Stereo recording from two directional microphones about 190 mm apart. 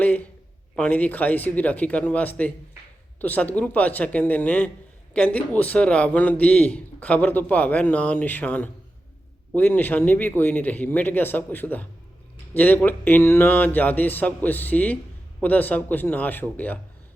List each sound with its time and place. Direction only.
0.8 s a man's voice: 10° left (ahead or behind)